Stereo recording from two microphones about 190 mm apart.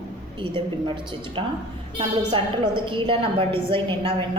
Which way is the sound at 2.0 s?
25° right (ahead or behind).